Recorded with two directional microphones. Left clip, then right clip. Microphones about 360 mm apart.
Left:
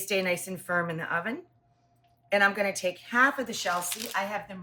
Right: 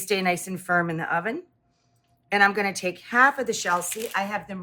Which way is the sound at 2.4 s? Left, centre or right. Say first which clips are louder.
Right 6 dB; centre.